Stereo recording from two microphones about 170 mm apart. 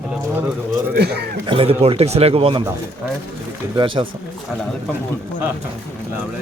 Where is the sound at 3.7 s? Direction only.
30° right (ahead or behind).